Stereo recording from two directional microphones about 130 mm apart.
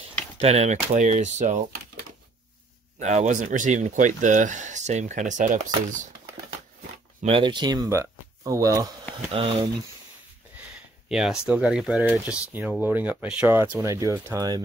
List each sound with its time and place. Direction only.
0.4 s speech: 55° right (ahead or behind)
3.0 s speech: 65° right (ahead or behind)
7.2 s speech: 40° right (ahead or behind)
9.3 s speech: 45° right (ahead or behind)
11.1 s speech: 5° right (ahead or behind)
13.7 s speech: 25° right (ahead or behind)